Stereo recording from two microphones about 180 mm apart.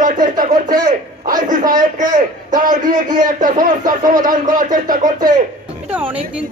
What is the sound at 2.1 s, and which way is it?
Speech, 50° right (ahead or behind).